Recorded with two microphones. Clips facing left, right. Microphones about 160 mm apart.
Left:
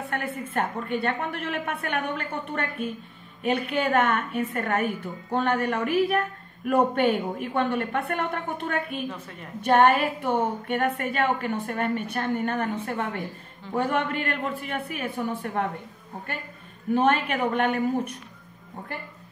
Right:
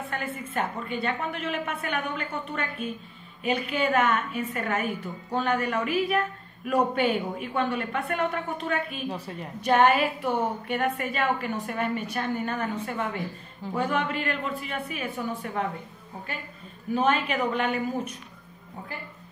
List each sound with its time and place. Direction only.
0.1 s a woman's voice: 60° left (ahead or behind)
9.1 s a woman's voice: 35° right (ahead or behind)
9.6 s a woman's voice: 55° left (ahead or behind)
16.9 s a woman's voice: 55° left (ahead or behind)